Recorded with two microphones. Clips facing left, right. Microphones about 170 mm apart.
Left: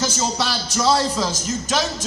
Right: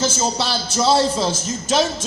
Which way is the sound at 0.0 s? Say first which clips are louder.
Right 2 dB; 25° right (ahead or behind).